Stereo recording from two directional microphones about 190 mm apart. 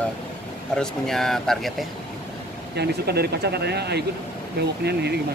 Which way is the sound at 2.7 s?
55° right (ahead or behind).